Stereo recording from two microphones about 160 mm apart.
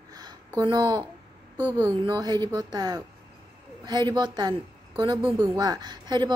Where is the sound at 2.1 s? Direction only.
25° right (ahead or behind).